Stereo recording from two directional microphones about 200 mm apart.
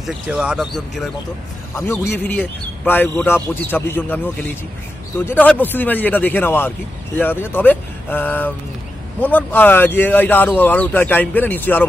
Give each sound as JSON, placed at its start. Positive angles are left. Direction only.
{"t": 0.0, "sound": "speech", "side_deg": -5}
{"t": 2.1, "sound": "speech", "side_deg": 10}